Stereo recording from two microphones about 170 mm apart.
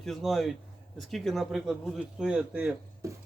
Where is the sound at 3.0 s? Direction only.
20° right (ahead or behind).